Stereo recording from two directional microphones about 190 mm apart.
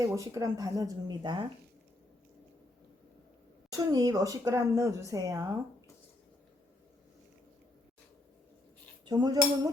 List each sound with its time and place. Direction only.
0.0 s speech: 15° right (ahead or behind)
3.7 s speech: 20° right (ahead or behind)
9.0 s speech: 20° right (ahead or behind)